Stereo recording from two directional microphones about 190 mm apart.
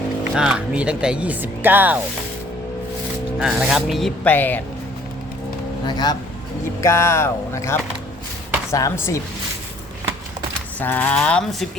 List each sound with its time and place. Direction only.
0.3 s speech: 5° right (ahead or behind)
3.3 s speech: centre (ahead or behind)
5.8 s speech: 20° left (ahead or behind)
10.8 s speech: 10° left (ahead or behind)